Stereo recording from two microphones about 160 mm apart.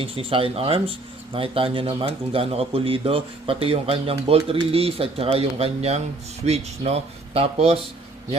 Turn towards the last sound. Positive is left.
turn(degrees=-40)  # may be behind; listen again after turning